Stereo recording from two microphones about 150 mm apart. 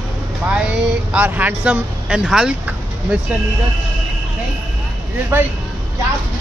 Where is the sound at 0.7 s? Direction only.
10° right (ahead or behind).